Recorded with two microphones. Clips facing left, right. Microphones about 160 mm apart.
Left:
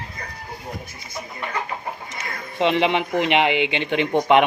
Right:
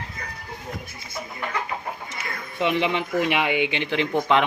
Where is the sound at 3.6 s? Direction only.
15° left (ahead or behind).